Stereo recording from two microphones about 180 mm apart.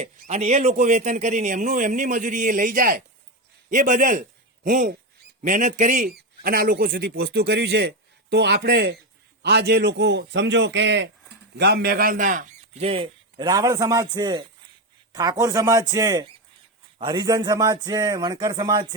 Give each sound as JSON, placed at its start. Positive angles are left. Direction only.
{"t": 0.0, "sound": "a man's voice", "side_deg": -40}
{"t": 6.1, "sound": "a man's voice", "side_deg": -55}
{"t": 11.5, "sound": "a man's voice", "side_deg": -65}